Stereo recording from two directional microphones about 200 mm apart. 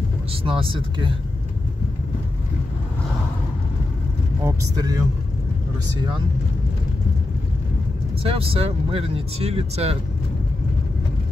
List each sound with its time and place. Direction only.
0.3 s speech: 25° right (ahead or behind)
4.5 s speech: 20° right (ahead or behind)
8.2 s speech: 30° right (ahead or behind)